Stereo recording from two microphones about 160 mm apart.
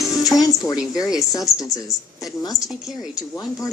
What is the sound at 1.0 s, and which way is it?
Speech, 5° right (ahead or behind).